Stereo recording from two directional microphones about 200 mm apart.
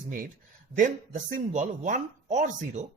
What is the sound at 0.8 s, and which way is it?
Speech, 40° right (ahead or behind).